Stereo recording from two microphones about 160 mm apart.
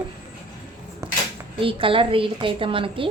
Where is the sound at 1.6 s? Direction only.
35° right (ahead or behind).